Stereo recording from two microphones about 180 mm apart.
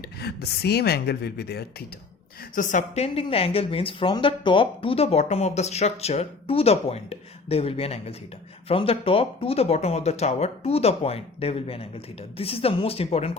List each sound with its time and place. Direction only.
0.2 s speech: 65° left (ahead or behind)
2.6 s a woman's voice: 45° left (ahead or behind)